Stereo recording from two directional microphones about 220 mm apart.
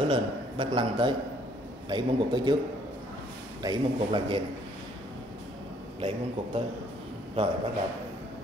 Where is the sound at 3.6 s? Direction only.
20° right (ahead or behind).